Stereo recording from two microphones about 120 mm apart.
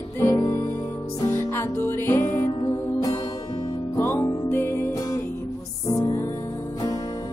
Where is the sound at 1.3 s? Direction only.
20° left (ahead or behind).